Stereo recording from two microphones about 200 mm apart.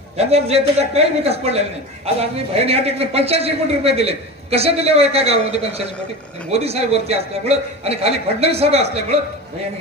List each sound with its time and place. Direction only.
0.2 s a man's voice: 30° right (ahead or behind)